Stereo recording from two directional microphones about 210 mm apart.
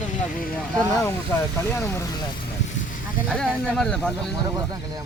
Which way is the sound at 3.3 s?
5° left (ahead or behind).